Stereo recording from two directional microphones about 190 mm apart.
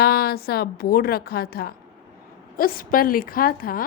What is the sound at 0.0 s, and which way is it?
A woman's voice, 55° left (ahead or behind).